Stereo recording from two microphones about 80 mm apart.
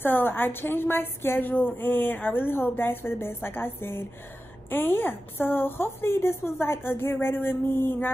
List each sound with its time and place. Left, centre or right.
0.0 s a woman's voice: left